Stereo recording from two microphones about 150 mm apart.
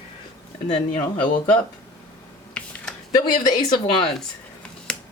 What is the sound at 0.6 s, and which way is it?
Speech, 40° left (ahead or behind).